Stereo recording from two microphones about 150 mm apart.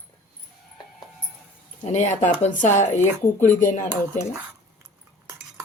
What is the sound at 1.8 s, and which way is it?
Speech, 50° left (ahead or behind).